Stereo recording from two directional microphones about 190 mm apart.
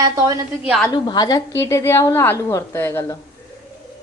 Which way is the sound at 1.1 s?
20° left (ahead or behind).